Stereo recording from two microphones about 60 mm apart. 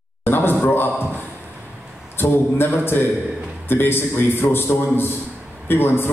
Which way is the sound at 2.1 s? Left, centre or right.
Left.